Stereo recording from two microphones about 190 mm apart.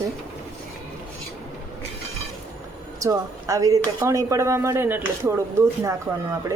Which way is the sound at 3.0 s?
15° right (ahead or behind).